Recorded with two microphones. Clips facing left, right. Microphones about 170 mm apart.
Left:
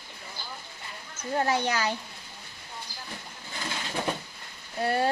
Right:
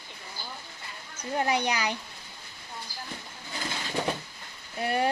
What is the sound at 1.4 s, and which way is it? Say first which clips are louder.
Speech: left 1 dB; 15° right (ahead or behind).